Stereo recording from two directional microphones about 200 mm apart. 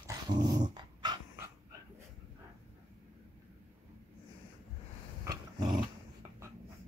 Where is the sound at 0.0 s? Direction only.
20° right (ahead or behind).